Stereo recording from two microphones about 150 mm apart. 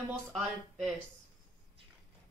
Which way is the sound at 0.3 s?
Centre (ahead or behind).